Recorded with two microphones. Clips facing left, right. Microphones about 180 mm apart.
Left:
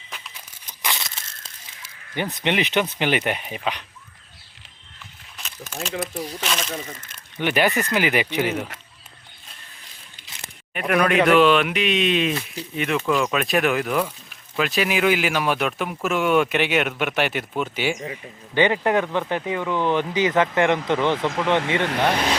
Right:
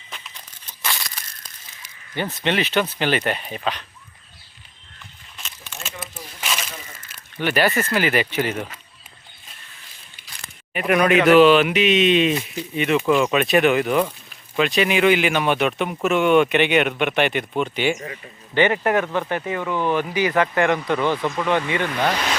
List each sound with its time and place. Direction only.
0.1 s crumpling: 10° left (ahead or behind)
2.1 s speech: 15° left (ahead or behind)
7.3 s speech: 15° left (ahead or behind)
10.2 s a sound: 20° left (ahead or behind)
10.8 s speech: 5° right (ahead or behind)
18.0 s speech: 15° left (ahead or behind)
19.7 s speech: 15° right (ahead or behind)
20.0 s speech: 20° left (ahead or behind)
21.8 s speech: 65° left (ahead or behind)